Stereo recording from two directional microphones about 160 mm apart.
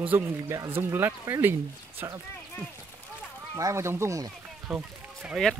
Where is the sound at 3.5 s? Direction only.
20° right (ahead or behind).